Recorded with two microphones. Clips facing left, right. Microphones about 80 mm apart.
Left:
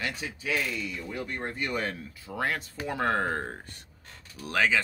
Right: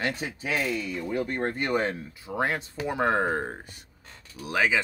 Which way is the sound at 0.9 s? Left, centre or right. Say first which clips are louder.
Right 6 dB; right.